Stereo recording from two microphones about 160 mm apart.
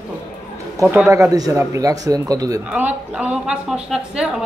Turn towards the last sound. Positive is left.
turn(degrees=-5)  # may be behind; listen again after turning